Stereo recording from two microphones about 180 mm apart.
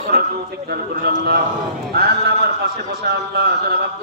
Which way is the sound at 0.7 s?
60° right (ahead or behind).